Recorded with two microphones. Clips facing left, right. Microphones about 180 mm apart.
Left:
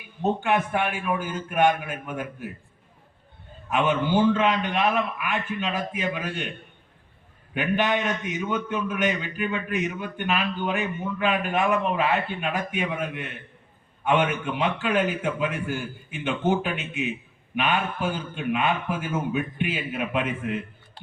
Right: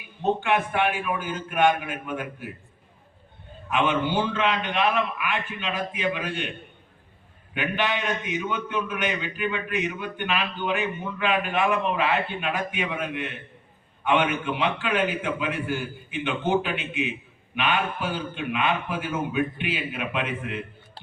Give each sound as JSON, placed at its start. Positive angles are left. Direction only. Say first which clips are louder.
{"t": 0.2, "sound": "a man's voice", "louder": "even", "side_deg": 40}
{"t": 3.7, "sound": "a man's voice", "louder": "left 1 dB", "side_deg": 40}
{"t": 7.5, "sound": "a man's voice", "louder": "left 3 dB", "side_deg": 45}